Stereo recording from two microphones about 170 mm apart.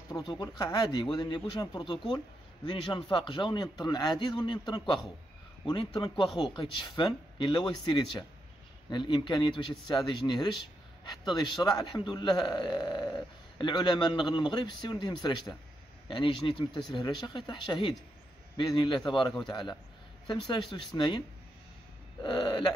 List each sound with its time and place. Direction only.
0.1 s a man's voice: 25° left (ahead or behind)
22.2 s a man's voice: 30° left (ahead or behind)